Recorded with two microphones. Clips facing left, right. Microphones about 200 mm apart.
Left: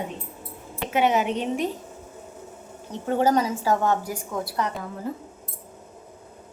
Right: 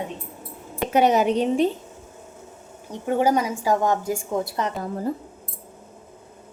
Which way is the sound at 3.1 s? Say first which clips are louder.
Right 1 dB; 10° right (ahead or behind).